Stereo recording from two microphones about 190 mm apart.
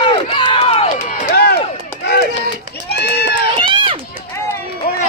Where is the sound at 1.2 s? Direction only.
55° left (ahead or behind).